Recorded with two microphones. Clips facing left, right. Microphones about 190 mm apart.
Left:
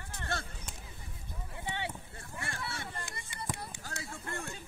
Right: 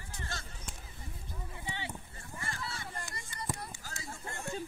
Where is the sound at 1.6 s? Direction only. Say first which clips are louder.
Left 4 dB; 65° left (ahead or behind).